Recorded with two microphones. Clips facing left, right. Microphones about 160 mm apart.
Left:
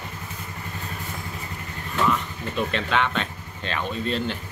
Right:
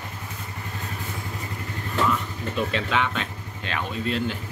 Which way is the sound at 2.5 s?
5° right (ahead or behind).